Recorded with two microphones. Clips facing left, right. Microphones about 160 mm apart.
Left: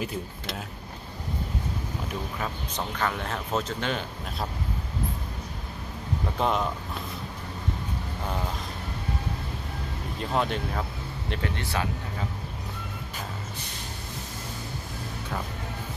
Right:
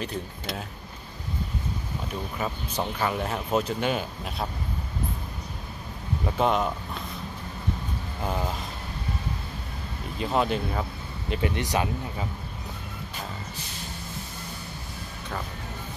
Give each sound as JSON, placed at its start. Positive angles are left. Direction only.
{"t": 0.0, "sound": "speech", "side_deg": 5}
{"t": 2.3, "sound": "speech", "side_deg": -10}
{"t": 6.3, "sound": "speech", "side_deg": 0}
{"t": 10.1, "sound": "speech", "side_deg": 0}
{"t": 11.5, "sound": "speech", "side_deg": -15}